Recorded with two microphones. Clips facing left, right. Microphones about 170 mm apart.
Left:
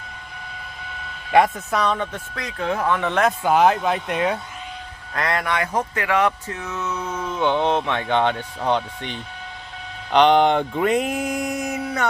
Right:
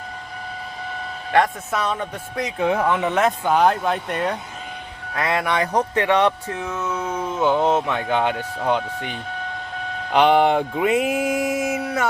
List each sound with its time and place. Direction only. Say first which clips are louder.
1.7 s speech: left 3 dB; 5° right (ahead or behind)
3.1 s music: even; centre (ahead or behind)
5.1 s speech: right 2 dB; 10° right (ahead or behind)
6.7 s speech: right 1 dB; 10° right (ahead or behind)
10.1 s music: even; 5° right (ahead or behind)